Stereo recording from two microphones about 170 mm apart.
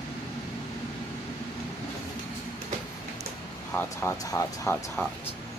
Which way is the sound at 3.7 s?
15° left (ahead or behind).